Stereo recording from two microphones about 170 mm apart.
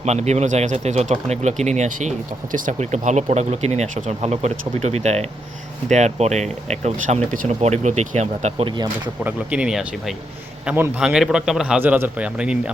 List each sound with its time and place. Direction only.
0.0 s speech: 40° right (ahead or behind)
9.2 s a man's voice: 5° right (ahead or behind)